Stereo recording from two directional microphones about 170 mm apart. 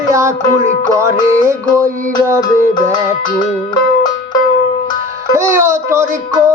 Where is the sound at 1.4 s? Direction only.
15° right (ahead or behind).